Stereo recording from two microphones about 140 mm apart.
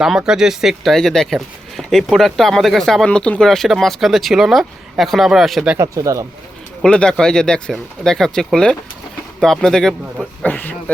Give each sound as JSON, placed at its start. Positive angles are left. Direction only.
{"t": 0.0, "sound": "speech", "side_deg": -5}
{"t": 5.7, "sound": "speech", "side_deg": -20}
{"t": 6.8, "sound": "speech", "side_deg": 5}